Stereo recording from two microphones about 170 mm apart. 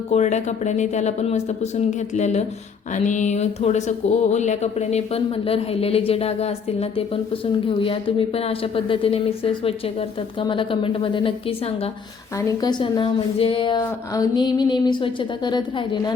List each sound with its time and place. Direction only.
0.1 s speech: 40° left (ahead or behind)
12.4 s a woman's voice: 20° left (ahead or behind)